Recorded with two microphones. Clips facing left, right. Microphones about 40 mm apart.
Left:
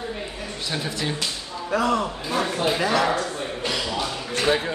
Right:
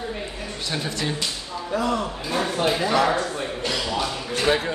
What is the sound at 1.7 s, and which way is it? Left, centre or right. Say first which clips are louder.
Speech: left 2 dB; left.